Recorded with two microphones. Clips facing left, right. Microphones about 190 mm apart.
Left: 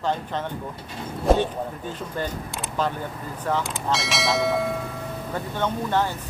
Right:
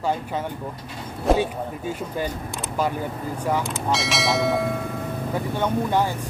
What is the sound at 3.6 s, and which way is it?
Speech, centre (ahead or behind).